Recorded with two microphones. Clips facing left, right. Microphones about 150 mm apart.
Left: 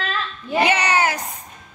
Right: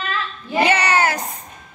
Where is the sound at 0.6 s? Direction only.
15° left (ahead or behind).